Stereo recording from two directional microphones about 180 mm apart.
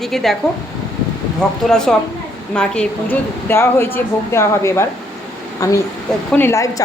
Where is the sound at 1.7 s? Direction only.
5° left (ahead or behind).